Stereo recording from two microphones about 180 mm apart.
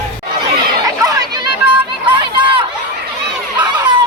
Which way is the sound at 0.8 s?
20° right (ahead or behind).